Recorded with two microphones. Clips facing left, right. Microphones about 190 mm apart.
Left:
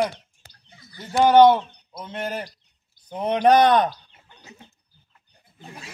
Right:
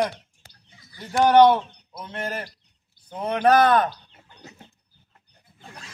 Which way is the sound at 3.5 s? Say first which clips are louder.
Left 1 dB; 20° left (ahead or behind).